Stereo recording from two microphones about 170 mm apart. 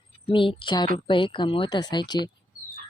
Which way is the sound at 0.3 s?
30° left (ahead or behind).